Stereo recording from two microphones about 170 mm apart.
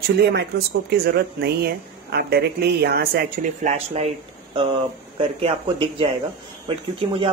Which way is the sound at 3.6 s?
40° right (ahead or behind).